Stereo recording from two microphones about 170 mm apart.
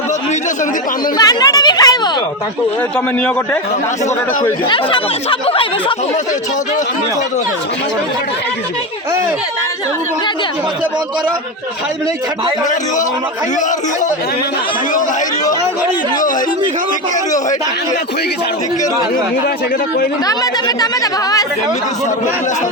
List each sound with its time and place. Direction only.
1.1 s speech: 20° left (ahead or behind)
4.7 s speech: 30° left (ahead or behind)
13.6 s speech: 45° left (ahead or behind)
20.2 s speech: 20° left (ahead or behind)